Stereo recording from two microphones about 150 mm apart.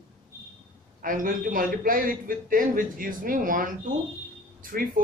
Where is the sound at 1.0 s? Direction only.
65° right (ahead or behind).